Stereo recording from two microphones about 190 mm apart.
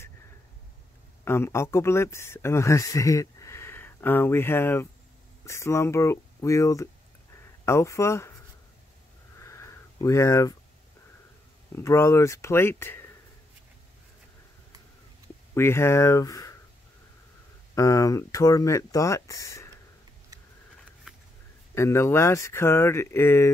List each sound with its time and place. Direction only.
1.2 s speech: 15° left (ahead or behind)
9.4 s a sound: 15° left (ahead or behind)
11.7 s speech: 15° left (ahead or behind)
15.5 s speech: 15° left (ahead or behind)
17.7 s speech: 15° left (ahead or behind)
21.7 s speech: 15° left (ahead or behind)